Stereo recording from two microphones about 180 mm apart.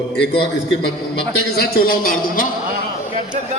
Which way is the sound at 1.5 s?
55° left (ahead or behind).